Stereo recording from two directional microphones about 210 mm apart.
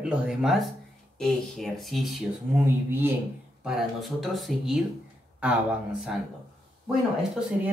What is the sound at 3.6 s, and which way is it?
Speech, centre (ahead or behind).